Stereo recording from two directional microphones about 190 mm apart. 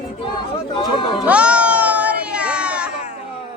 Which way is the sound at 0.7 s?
30° left (ahead or behind).